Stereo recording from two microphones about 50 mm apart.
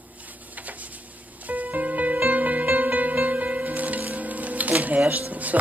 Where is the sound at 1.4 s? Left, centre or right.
Right.